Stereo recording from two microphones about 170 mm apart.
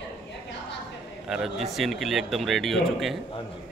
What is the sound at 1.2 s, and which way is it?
Speech, centre (ahead or behind).